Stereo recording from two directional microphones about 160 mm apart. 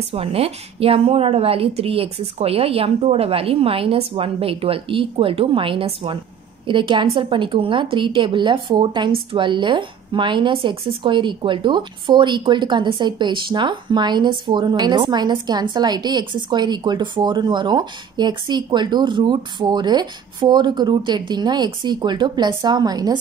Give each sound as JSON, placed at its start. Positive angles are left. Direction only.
{"t": 0.1, "sound": "a woman's voice", "side_deg": -35}